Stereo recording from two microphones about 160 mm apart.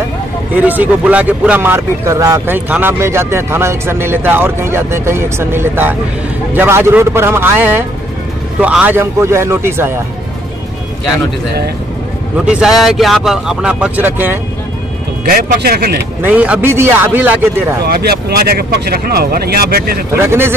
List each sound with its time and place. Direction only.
0.6 s speech: 10° right (ahead or behind)
12.4 s speech: 5° right (ahead or behind)
15.2 s speech: 70° right (ahead or behind)
16.2 s speech: 10° right (ahead or behind)
17.8 s speech: 75° right (ahead or behind)
20.2 s speech: 15° right (ahead or behind)